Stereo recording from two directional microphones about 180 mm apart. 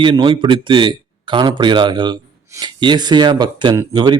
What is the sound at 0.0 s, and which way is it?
A man's voice, 30° right (ahead or behind).